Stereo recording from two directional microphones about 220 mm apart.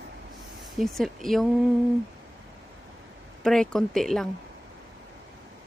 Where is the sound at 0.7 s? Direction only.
Centre (ahead or behind).